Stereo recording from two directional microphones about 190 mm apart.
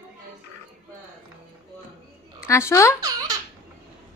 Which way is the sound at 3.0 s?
20° right (ahead or behind).